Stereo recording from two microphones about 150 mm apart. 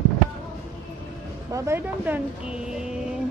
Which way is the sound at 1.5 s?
20° right (ahead or behind).